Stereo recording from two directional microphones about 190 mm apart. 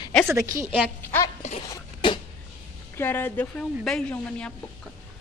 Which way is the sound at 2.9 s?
10° left (ahead or behind).